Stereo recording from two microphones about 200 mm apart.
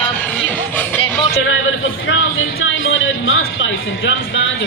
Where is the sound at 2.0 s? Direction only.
70° left (ahead or behind).